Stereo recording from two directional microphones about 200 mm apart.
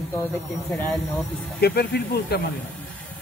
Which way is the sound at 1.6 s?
55° left (ahead or behind).